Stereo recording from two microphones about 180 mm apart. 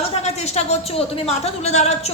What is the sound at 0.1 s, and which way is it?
A woman's voice, 35° left (ahead or behind).